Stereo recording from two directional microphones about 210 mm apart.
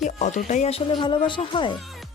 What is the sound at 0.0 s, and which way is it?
A woman's voice, 35° left (ahead or behind).